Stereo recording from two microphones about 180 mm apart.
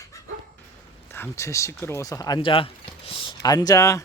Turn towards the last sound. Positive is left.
turn(degrees=20)  # may be behind; listen again after turning